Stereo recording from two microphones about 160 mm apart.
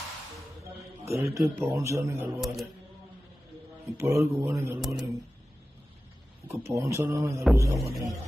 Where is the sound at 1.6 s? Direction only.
15° right (ahead or behind).